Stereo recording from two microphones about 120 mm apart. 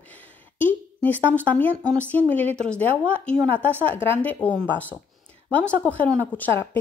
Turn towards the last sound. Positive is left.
turn(degrees=20)  # may be behind; listen again after turning